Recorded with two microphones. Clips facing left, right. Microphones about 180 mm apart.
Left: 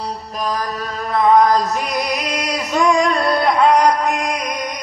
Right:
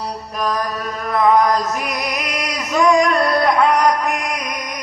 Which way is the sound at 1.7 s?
30° left (ahead or behind).